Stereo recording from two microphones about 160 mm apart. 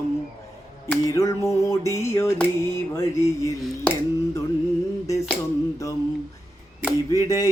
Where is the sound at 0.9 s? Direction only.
20° left (ahead or behind).